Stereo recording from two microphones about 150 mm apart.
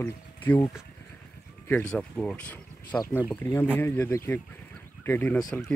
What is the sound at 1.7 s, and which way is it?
Speech, 5° left (ahead or behind).